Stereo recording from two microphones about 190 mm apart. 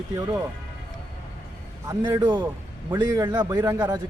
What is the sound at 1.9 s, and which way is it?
A man's voice, 15° right (ahead or behind).